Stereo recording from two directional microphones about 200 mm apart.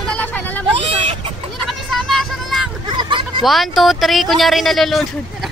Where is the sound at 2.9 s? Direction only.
25° right (ahead or behind).